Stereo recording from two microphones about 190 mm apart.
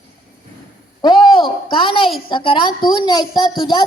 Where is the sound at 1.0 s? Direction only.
25° left (ahead or behind).